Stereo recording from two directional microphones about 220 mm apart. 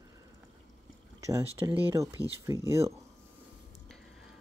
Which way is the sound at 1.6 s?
10° right (ahead or behind).